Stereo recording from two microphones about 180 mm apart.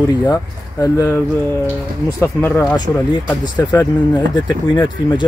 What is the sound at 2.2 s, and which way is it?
Speech, 15° left (ahead or behind).